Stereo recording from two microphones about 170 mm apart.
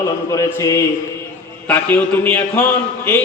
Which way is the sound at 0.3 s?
20° left (ahead or behind).